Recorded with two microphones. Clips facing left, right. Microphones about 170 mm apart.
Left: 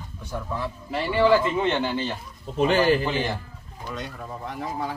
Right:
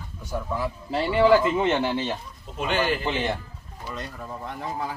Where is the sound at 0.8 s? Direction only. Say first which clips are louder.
Right 1 dB; 25° right (ahead or behind).